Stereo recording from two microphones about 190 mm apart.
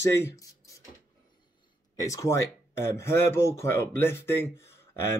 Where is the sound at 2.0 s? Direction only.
15° left (ahead or behind).